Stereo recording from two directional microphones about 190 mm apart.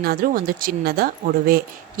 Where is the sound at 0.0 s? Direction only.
50° right (ahead or behind).